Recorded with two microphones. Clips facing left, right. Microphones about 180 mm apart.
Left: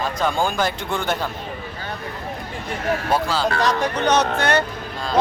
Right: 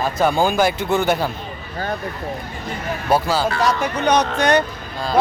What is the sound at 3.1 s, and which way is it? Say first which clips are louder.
Speech: right 5 dB; 10° right (ahead or behind).